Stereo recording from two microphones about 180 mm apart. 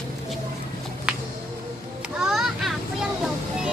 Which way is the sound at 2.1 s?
5° right (ahead or behind).